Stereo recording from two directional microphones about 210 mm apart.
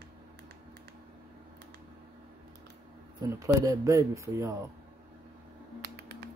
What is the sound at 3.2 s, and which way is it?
Speech, 15° right (ahead or behind).